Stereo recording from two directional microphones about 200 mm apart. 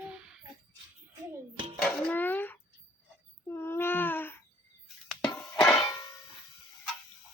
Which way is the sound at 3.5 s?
10° left (ahead or behind).